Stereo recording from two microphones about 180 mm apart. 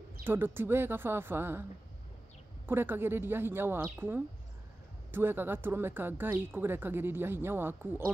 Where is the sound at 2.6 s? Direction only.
10° right (ahead or behind).